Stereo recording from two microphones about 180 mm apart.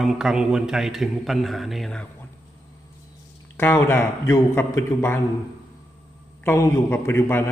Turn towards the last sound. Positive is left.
turn(degrees=10)  # may be behind; listen again after turning